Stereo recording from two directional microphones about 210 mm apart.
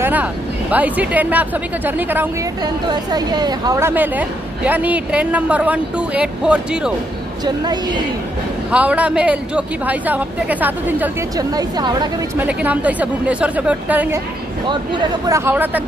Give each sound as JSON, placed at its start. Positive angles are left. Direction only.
{"t": 0.0, "sound": "a woman's voice", "side_deg": -10}
{"t": 2.9, "sound": "a woman's voice", "side_deg": -20}
{"t": 7.4, "sound": "a woman's voice", "side_deg": -20}
{"t": 8.7, "sound": "a woman's voice", "side_deg": -5}
{"t": 12.4, "sound": "a woman's voice", "side_deg": -5}
{"t": 14.7, "sound": "a woman's voice", "side_deg": -20}